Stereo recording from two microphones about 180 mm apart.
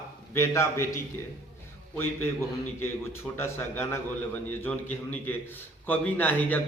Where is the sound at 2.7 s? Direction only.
15° left (ahead or behind).